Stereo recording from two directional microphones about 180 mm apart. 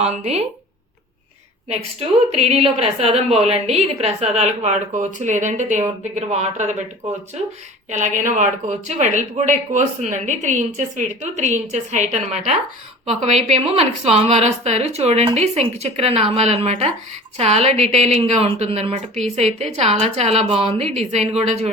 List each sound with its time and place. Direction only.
0.0 s a woman's voice: 35° right (ahead or behind)
1.7 s a woman's voice: 35° right (ahead or behind)
7.9 s a woman's voice: 45° right (ahead or behind)